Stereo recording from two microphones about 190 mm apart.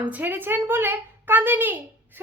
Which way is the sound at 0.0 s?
10° right (ahead or behind).